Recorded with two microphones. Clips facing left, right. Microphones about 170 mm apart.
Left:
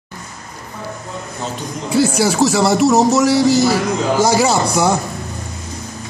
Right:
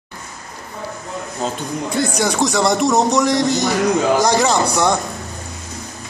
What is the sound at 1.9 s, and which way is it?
Speech, 5° left (ahead or behind).